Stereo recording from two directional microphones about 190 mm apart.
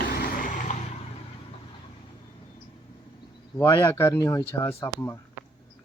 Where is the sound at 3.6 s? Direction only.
20° left (ahead or behind).